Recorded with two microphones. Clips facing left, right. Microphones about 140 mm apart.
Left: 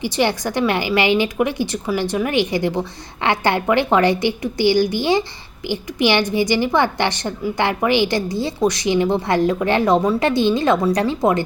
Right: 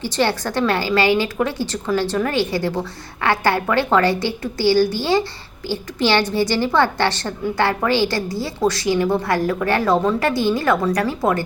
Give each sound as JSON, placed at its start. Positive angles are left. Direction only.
{"t": 0.0, "sound": "a woman's voice", "side_deg": 15}